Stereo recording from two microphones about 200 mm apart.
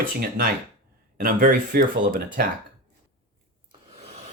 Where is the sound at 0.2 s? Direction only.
45° right (ahead or behind).